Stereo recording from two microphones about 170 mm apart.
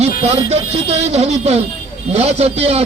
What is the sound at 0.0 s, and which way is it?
A man's voice, 35° right (ahead or behind).